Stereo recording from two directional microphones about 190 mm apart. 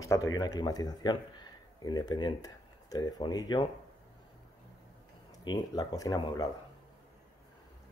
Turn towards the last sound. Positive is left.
turn(degrees=20)  # may be behind; listen again after turning